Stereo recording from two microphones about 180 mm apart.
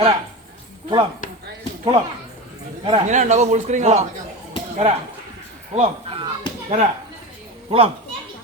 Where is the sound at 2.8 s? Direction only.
35° right (ahead or behind).